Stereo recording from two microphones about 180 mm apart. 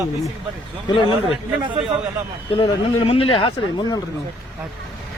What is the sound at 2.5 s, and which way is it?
Speech, 30° left (ahead or behind).